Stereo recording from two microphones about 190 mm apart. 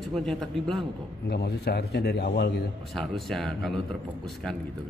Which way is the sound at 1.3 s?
60° left (ahead or behind).